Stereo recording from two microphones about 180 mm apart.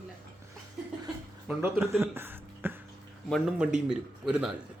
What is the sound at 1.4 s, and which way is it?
Speech, 15° right (ahead or behind).